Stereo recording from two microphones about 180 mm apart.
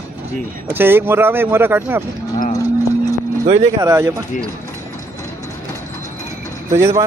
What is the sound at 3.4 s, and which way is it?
Speech, 40° right (ahead or behind).